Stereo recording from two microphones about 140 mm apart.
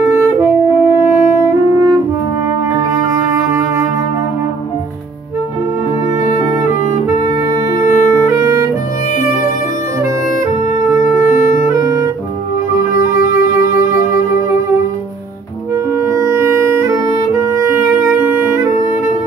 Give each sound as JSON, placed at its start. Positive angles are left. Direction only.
{"t": 0.0, "sound": "saxophone", "side_deg": -20}
{"t": 3.4, "sound": "music", "side_deg": -20}
{"t": 6.2, "sound": "music", "side_deg": 65}
{"t": 8.1, "sound": "music", "side_deg": -20}
{"t": 10.9, "sound": "music", "side_deg": -20}
{"t": 16.1, "sound": "music", "side_deg": -20}